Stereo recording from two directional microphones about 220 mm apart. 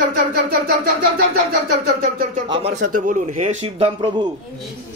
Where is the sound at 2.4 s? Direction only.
20° right (ahead or behind).